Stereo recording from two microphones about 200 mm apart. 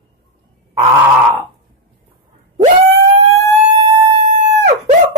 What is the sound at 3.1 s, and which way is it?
Siren, 30° right (ahead or behind).